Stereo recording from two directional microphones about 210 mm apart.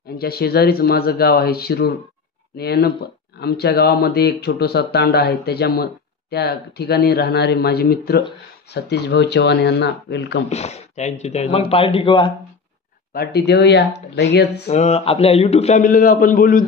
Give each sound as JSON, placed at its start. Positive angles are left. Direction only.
{"t": 0.2, "sound": "speech", "side_deg": 45}
{"t": 10.5, "sound": "a man's voice", "side_deg": 30}
{"t": 13.1, "sound": "speech", "side_deg": 50}
{"t": 14.7, "sound": "a man's voice", "side_deg": 30}